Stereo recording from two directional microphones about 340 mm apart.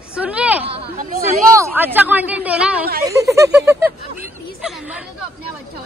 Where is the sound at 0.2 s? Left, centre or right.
Centre.